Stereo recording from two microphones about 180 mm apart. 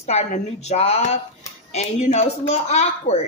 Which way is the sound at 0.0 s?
40° left (ahead or behind).